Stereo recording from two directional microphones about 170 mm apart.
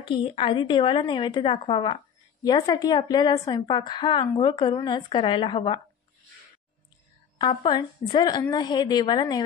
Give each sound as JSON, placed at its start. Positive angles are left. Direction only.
{"t": 0.1, "sound": "a woman's voice", "side_deg": 30}
{"t": 7.3, "sound": "a woman's voice", "side_deg": 30}